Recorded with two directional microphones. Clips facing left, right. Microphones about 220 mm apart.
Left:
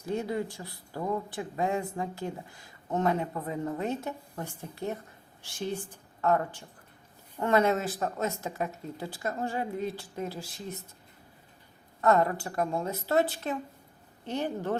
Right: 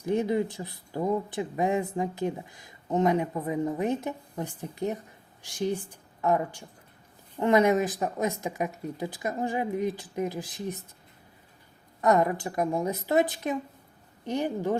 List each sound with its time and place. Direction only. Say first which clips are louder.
0.0 s a woman's voice: right 5 dB; 20° right (ahead or behind)
11.9 s speech: right 1 dB; 15° right (ahead or behind)